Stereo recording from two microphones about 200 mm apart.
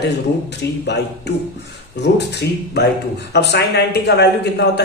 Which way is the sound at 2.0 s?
60° left (ahead or behind).